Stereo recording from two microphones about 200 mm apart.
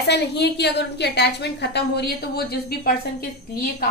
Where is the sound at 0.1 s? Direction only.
55° left (ahead or behind).